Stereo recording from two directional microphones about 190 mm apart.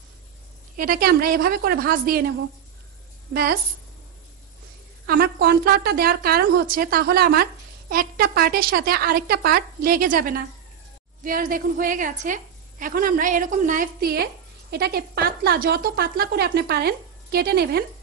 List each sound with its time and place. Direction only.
0.7 s a woman's voice: 50° right (ahead or behind)
5.0 s a woman's voice: 55° right (ahead or behind)